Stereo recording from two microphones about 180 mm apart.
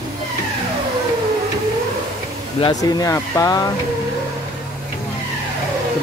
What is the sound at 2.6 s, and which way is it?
Speech, 20° left (ahead or behind).